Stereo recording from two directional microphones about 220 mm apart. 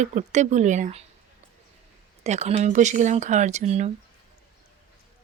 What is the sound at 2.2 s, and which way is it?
Speech, 30° right (ahead or behind).